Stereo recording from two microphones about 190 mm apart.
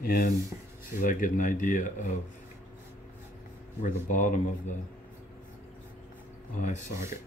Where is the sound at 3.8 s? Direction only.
40° left (ahead or behind).